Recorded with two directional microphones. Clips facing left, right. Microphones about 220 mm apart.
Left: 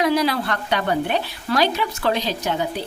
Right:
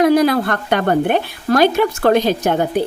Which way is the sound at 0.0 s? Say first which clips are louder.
Right 7 dB; 50° right (ahead or behind).